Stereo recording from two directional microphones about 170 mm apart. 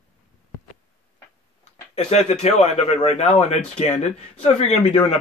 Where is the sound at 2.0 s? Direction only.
40° left (ahead or behind).